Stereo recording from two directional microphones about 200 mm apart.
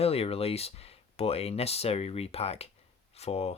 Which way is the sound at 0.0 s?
30° left (ahead or behind).